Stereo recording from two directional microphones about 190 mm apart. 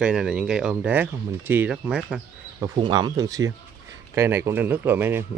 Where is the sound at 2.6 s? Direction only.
25° right (ahead or behind).